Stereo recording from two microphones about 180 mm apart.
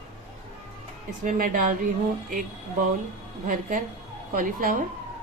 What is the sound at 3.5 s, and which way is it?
Speech, 50° right (ahead or behind).